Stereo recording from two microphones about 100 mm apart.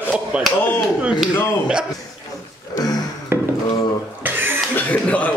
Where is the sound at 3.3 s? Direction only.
25° right (ahead or behind).